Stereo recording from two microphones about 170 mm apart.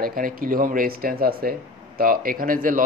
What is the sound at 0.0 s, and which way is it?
Speech, 55° right (ahead or behind).